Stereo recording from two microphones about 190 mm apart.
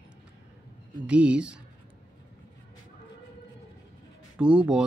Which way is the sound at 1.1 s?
5° right (ahead or behind).